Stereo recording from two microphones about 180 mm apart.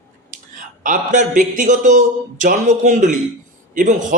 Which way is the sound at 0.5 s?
45° right (ahead or behind).